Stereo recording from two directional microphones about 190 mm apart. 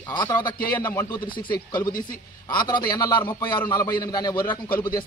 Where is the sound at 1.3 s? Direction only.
25° left (ahead or behind).